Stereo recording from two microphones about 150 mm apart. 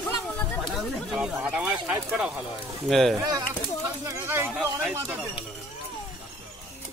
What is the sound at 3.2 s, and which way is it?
Speech, 25° right (ahead or behind).